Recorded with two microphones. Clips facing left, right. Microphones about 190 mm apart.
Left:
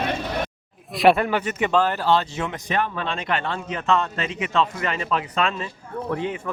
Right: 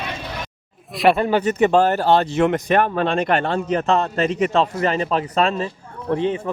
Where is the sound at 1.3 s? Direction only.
40° right (ahead or behind).